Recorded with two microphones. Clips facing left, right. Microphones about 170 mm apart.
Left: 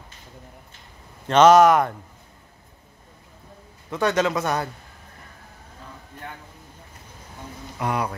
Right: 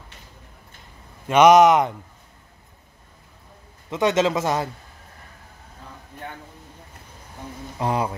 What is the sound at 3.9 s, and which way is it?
Speech, 20° right (ahead or behind).